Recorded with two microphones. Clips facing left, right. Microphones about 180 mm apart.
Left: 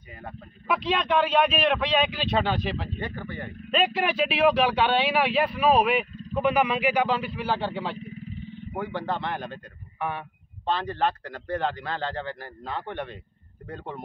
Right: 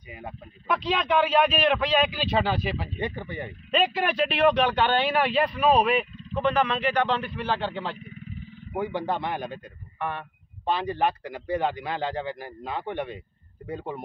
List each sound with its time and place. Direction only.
0.7 s speech: centre (ahead or behind)
3.0 s a man's voice: 15° right (ahead or behind)
3.7 s speech: centre (ahead or behind)
8.7 s a man's voice: 15° right (ahead or behind)
9.9 s speech: 5° left (ahead or behind)
10.6 s a man's voice: 10° right (ahead or behind)